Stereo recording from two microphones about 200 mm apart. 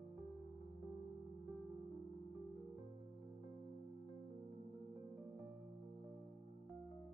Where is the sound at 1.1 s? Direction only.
40° right (ahead or behind).